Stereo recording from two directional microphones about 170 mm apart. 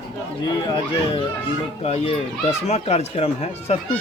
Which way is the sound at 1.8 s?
40° left (ahead or behind).